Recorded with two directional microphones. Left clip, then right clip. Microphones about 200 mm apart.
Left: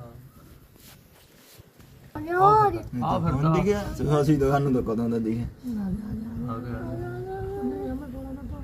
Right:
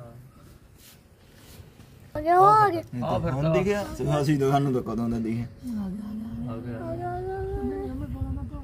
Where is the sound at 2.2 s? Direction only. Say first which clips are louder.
Right 1 dB; 50° right (ahead or behind).